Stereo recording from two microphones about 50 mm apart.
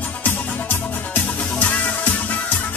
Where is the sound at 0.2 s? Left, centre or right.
Left.